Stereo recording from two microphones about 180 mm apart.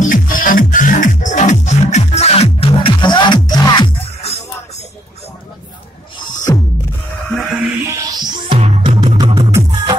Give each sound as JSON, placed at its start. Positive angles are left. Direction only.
{"t": 0.0, "sound": "music", "side_deg": 50}
{"t": 6.1, "sound": "music", "side_deg": 25}
{"t": 7.8, "sound": "music", "side_deg": -15}